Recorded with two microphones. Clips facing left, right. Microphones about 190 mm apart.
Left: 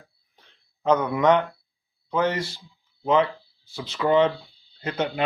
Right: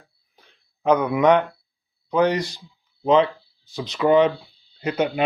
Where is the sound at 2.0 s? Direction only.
15° right (ahead or behind).